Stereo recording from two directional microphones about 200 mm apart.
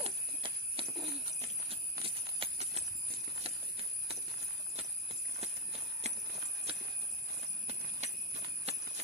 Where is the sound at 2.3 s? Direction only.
30° right (ahead or behind).